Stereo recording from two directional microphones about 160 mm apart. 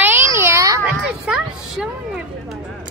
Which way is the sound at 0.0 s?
15° right (ahead or behind).